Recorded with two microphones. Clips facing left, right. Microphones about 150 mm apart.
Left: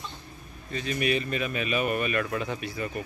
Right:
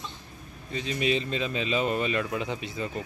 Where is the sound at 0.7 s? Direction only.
20° right (ahead or behind).